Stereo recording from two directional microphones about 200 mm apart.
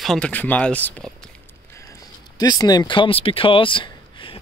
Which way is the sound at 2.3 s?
20° left (ahead or behind).